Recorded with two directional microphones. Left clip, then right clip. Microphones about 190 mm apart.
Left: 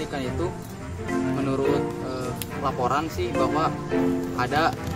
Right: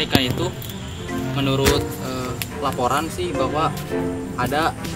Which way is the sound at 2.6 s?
Centre (ahead or behind).